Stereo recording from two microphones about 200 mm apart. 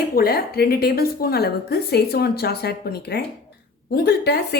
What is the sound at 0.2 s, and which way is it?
A woman's voice, 50° left (ahead or behind).